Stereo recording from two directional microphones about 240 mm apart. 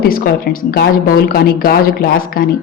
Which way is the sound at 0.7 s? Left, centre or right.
Left.